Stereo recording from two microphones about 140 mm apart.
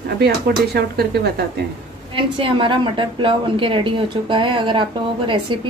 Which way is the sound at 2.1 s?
35° right (ahead or behind).